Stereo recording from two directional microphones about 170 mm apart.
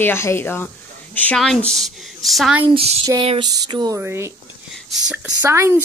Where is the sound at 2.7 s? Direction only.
35° right (ahead or behind).